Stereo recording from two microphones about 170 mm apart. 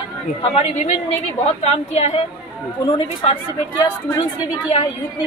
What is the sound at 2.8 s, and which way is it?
Speech, 25° left (ahead or behind).